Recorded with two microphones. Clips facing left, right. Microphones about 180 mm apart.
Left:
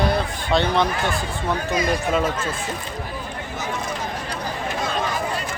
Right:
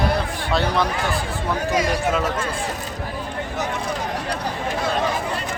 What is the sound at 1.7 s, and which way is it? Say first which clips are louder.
Speech: right 1 dB; 80° right.